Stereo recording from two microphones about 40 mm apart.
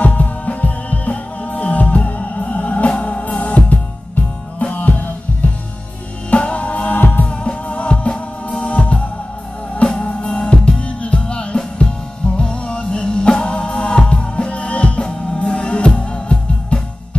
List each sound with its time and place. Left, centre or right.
0.0 s music: left
7.0 s music: left
7.2 s music: left
10.2 s music: centre
11.0 s music: left